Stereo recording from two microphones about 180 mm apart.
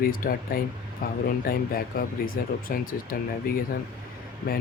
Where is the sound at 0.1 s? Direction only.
50° left (ahead or behind).